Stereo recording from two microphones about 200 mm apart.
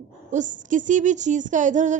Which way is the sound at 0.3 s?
40° right (ahead or behind).